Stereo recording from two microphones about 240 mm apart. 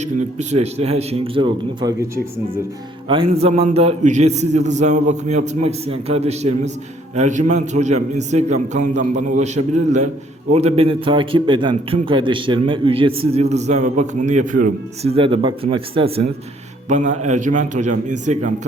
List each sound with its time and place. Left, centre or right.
0.0 s a man's voice: right